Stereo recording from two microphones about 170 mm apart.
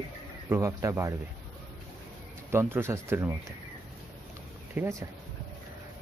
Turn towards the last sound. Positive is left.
turn(degrees=-10)  # may be behind; listen again after turning